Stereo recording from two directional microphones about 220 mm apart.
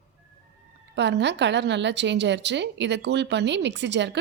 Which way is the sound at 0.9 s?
50° right (ahead or behind).